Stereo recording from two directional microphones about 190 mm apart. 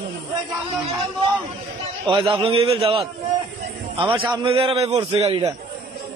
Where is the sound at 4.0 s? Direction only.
25° right (ahead or behind).